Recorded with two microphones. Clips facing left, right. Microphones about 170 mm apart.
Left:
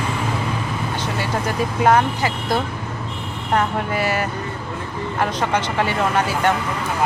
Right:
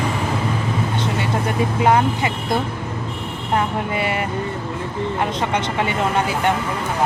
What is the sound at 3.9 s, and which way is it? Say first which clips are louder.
Speech: even; 25° right (ahead or behind).